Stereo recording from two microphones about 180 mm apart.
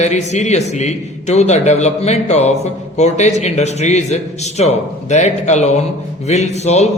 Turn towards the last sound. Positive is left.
turn(degrees=40)  # may be behind; listen again after turning